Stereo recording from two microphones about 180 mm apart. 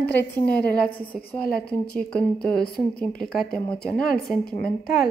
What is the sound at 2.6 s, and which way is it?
Speech, 60° left (ahead or behind).